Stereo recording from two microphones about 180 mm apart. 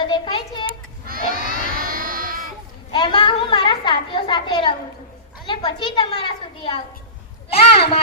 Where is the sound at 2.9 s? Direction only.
30° left (ahead or behind).